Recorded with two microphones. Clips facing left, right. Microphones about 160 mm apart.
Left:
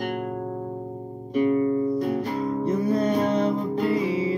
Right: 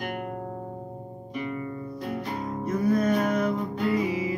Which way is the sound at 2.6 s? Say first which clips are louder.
Even; 30° left (ahead or behind).